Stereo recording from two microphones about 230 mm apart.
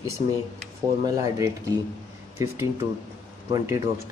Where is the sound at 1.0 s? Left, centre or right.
Centre.